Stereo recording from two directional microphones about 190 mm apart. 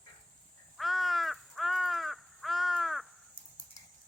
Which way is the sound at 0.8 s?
Centre (ahead or behind).